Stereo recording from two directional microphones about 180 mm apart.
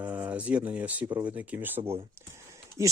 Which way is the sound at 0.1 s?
10° right (ahead or behind).